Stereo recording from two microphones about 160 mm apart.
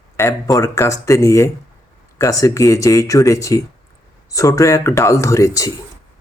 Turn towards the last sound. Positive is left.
turn(degrees=20)  # may be behind; listen again after turning